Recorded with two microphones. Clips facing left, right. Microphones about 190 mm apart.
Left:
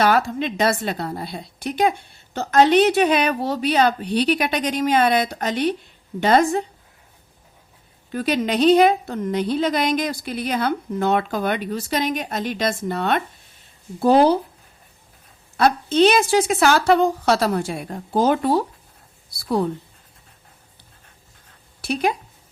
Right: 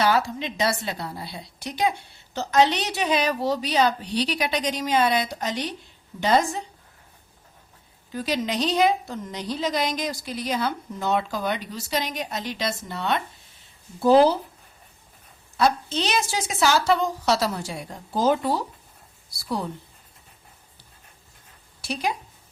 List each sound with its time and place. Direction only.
0.0 s a woman's voice: 55° left (ahead or behind)
8.1 s a woman's voice: 60° left (ahead or behind)
15.5 s a woman's voice: 60° left (ahead or behind)
21.8 s a sound: 60° left (ahead or behind)